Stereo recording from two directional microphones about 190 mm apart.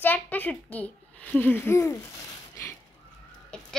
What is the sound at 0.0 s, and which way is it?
A child's voice, 10° left (ahead or behind).